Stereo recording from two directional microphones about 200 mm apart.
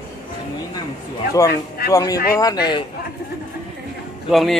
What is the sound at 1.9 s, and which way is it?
Speech, 15° left (ahead or behind).